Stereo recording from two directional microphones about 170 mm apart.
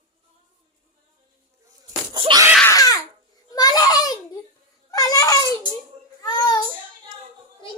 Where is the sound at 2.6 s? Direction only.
20° left (ahead or behind).